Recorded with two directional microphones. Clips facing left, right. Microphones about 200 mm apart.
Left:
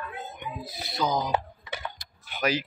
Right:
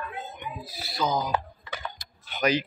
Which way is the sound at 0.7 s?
20° left (ahead or behind).